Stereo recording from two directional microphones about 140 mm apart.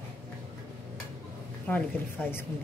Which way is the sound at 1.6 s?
15° left (ahead or behind).